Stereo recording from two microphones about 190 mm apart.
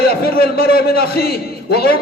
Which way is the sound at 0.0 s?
55° left (ahead or behind).